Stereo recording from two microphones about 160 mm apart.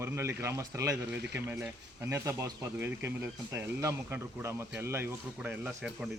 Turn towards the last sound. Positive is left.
turn(degrees=-5)  # may be behind; listen again after turning